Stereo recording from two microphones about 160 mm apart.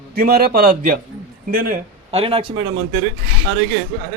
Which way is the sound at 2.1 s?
35° right (ahead or behind).